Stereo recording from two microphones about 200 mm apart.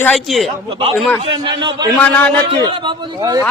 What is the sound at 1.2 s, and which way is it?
Speech, 25° right (ahead or behind).